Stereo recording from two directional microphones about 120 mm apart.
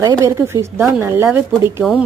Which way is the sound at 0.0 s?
30° right (ahead or behind).